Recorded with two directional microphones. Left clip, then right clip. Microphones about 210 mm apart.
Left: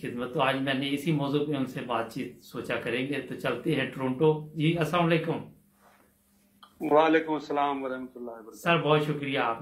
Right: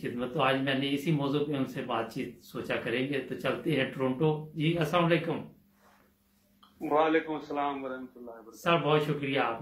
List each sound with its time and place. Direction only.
0.0 s speech: 15° left (ahead or behind)
6.8 s speech: 45° left (ahead or behind)
8.5 s speech: 15° left (ahead or behind)